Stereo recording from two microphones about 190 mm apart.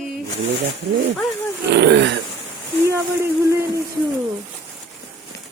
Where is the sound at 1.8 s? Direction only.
65° right (ahead or behind).